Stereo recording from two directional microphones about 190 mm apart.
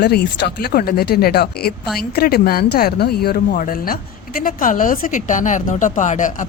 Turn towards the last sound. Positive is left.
turn(degrees=40)  # may be behind; listen again after turning